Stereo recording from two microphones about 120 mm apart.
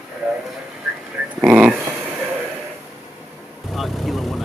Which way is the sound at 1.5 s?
5° right (ahead or behind).